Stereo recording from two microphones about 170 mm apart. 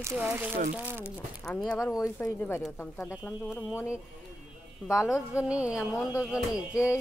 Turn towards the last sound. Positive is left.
turn(degrees=-5)  # may be behind; listen again after turning